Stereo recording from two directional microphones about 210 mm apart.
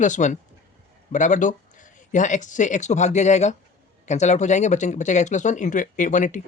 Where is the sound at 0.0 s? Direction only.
35° left (ahead or behind).